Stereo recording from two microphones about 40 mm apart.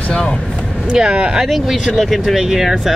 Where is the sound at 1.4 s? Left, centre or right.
Centre.